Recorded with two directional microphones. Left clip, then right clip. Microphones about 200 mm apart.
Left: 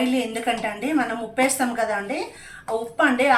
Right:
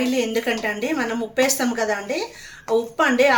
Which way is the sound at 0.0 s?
50° right (ahead or behind).